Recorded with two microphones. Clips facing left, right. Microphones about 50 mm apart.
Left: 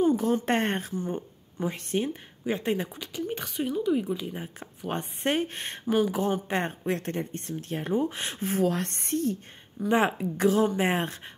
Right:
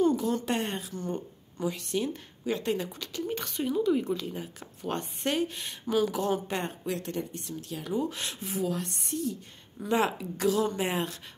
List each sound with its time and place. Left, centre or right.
0.1 s a sound: left
0.5 s speech: left
0.9 s speech: centre
1.6 s speech: left; by 4.3 s centre
4.3 s speech: left
9.8 s speech: left